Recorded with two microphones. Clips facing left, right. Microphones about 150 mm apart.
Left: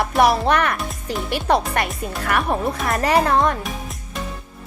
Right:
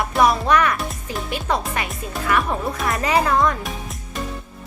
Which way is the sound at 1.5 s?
70° left (ahead or behind).